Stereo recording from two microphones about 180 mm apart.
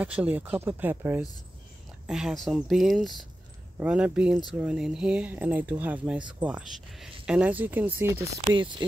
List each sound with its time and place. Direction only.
0.0 s speech: 10° right (ahead or behind)
8.5 s speech: 25° right (ahead or behind)